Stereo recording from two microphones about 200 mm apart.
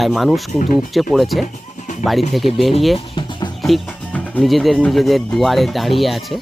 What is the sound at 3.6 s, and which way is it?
Speech, 5° left (ahead or behind).